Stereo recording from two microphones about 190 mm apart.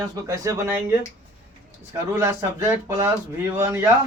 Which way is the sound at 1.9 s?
15° right (ahead or behind).